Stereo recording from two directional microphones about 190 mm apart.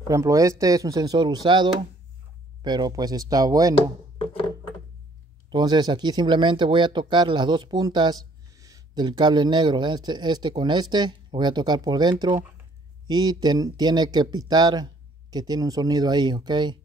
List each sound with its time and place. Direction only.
0.1 s speech: 15° right (ahead or behind)
3.7 s speech: 30° left (ahead or behind)
5.5 s speech: 20° right (ahead or behind)